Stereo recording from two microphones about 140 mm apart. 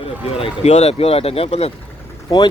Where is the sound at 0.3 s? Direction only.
45° left (ahead or behind).